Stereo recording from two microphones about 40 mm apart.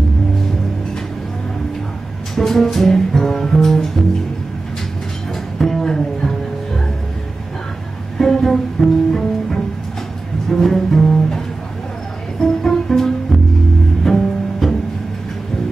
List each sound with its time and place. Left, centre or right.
2.3 s music: centre
5.3 s music: centre
8.2 s music: centre
10.5 s double bass: centre
12.4 s music: centre